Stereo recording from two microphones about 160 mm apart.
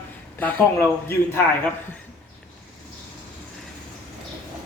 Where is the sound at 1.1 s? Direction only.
15° left (ahead or behind).